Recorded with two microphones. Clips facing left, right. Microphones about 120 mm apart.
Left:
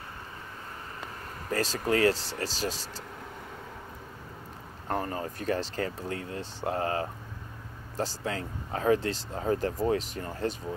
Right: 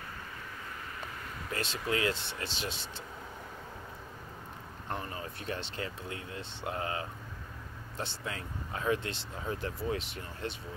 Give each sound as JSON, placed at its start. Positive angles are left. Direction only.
{"t": 1.5, "sound": "speech", "side_deg": 40}
{"t": 4.8, "sound": "speech", "side_deg": 40}